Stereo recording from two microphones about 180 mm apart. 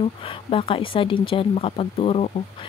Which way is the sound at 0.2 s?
30° left (ahead or behind).